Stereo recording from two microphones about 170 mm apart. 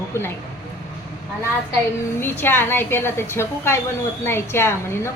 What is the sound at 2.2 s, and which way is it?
A woman's voice, 10° left (ahead or behind).